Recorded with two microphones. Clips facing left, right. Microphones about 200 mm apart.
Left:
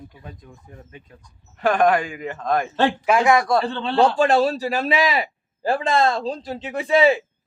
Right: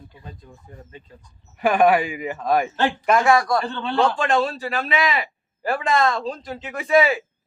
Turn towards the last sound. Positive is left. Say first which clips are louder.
# left 1 dB
turn(degrees=30)  # may be behind; listen again after turning